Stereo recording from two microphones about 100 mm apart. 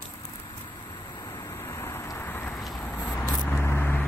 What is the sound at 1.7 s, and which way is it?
Vehicle, 25° left (ahead or behind).